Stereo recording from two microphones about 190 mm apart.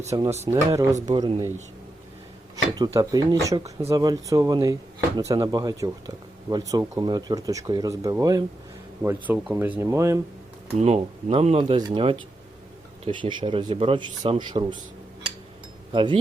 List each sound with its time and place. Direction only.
0.1 s speech: 20° right (ahead or behind)
2.7 s speech: 20° right (ahead or behind)
10.8 s speech: 35° right (ahead or behind)
15.9 s speech: 25° right (ahead or behind)